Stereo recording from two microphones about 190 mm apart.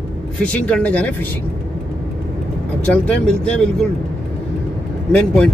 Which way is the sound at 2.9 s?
5° left (ahead or behind).